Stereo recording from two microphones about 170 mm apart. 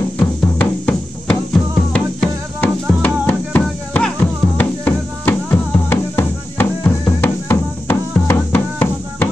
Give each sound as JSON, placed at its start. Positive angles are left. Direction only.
{"t": 0.6, "sound": "music", "side_deg": 5}